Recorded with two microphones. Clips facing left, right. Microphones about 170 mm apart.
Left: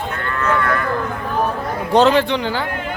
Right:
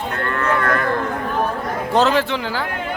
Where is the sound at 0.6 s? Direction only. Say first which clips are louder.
Even; 45° right (ahead or behind).